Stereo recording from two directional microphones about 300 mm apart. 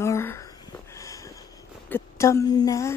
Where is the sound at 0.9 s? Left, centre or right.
Centre.